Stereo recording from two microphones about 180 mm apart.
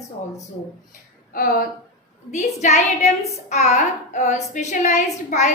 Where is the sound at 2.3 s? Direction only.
40° left (ahead or behind).